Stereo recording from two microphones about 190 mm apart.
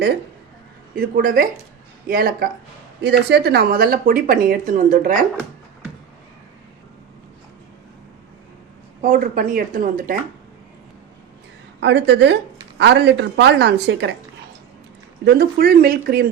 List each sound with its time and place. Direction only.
0.9 s speech: 50° right (ahead or behind)
9.0 s speech: 45° right (ahead or behind)
11.8 s speech: 65° right (ahead or behind)
15.2 s speech: 55° right (ahead or behind)